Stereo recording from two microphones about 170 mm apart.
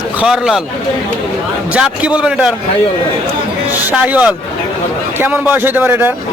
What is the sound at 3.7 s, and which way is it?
A man's voice, 10° right (ahead or behind).